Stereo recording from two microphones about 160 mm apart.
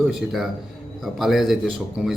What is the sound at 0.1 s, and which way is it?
Speech, centre (ahead or behind).